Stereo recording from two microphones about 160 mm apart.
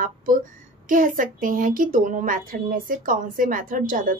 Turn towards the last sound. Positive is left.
turn(degrees=-55)  # may be behind; listen again after turning